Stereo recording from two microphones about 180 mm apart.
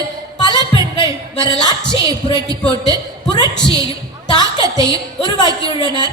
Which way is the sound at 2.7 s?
25° left (ahead or behind).